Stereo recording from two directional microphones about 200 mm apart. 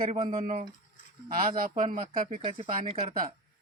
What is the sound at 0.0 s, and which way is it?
Speech, 30° right (ahead or behind).